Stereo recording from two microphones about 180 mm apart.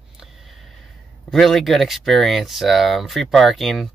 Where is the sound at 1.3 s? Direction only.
Centre (ahead or behind).